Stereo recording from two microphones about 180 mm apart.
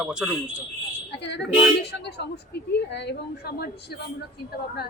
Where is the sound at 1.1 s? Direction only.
70° left (ahead or behind).